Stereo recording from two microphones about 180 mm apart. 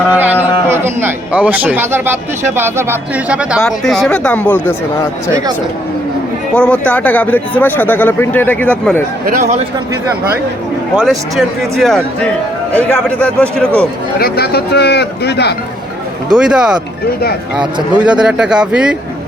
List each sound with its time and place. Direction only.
0.1 s a man's voice: 10° right (ahead or behind); by 4.7 s 10° left (ahead or behind)
6.5 s speech: 5° left (ahead or behind)
9.2 s speech: 45° right (ahead or behind)
10.9 s speech: centre (ahead or behind)
14.2 s speech: 60° left (ahead or behind)
16.3 s speech: 5° right (ahead or behind)
17.9 s speech: 5° right (ahead or behind)